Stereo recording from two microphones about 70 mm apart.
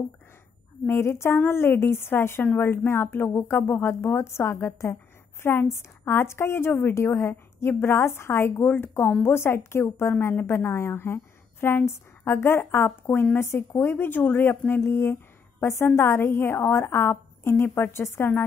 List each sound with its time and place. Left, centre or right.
0.8 s a woman's voice: left